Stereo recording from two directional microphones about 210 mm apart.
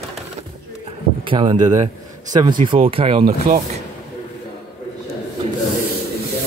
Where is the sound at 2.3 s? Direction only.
35° right (ahead or behind).